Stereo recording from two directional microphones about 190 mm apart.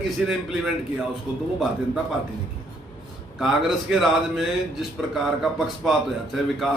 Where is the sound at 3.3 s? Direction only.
Centre (ahead or behind).